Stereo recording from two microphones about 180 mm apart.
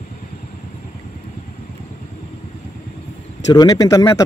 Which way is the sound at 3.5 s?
20° left (ahead or behind).